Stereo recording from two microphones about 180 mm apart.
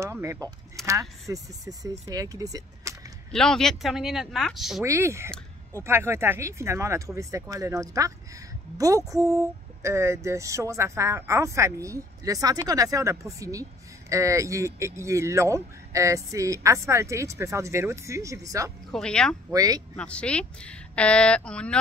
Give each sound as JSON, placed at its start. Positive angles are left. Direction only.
{"t": 0.0, "sound": "speech", "side_deg": -15}
{"t": 3.3, "sound": "speech", "side_deg": 5}
{"t": 4.8, "sound": "speech", "side_deg": -15}
{"t": 18.9, "sound": "speech", "side_deg": 5}
{"t": 19.5, "sound": "speech", "side_deg": -20}
{"t": 20.0, "sound": "speech", "side_deg": 5}